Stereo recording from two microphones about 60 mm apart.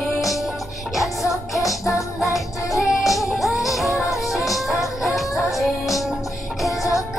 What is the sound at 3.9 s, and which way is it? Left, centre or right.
Music, left.